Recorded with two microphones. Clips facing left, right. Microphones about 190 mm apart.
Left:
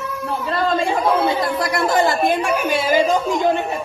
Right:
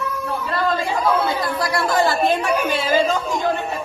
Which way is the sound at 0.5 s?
25° left (ahead or behind).